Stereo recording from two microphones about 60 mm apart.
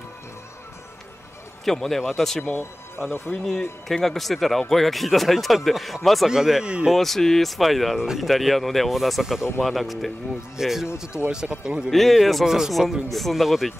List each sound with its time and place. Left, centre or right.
1.6 s speech: centre
6.9 s speech: centre
11.1 s speech: centre
11.9 s speech: centre